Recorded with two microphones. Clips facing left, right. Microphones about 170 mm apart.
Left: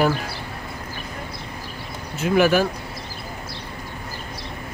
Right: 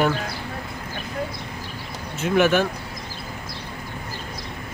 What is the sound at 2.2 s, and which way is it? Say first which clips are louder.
Speech: left 1 dB; centre (ahead or behind).